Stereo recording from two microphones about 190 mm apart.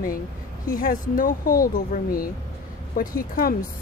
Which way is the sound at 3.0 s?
50° left (ahead or behind).